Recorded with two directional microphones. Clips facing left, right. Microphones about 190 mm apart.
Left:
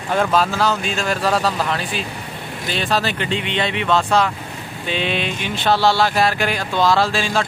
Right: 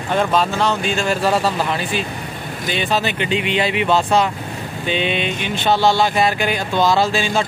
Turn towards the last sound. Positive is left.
turn(degrees=0)  # may be behind; listen again after turning